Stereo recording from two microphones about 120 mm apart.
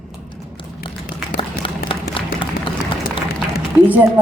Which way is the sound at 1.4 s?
45° left (ahead or behind).